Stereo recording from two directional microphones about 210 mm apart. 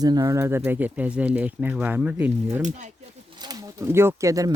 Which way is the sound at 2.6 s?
35° right (ahead or behind).